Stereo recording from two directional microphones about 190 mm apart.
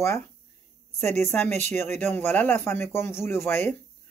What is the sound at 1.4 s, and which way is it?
Speech, 35° right (ahead or behind).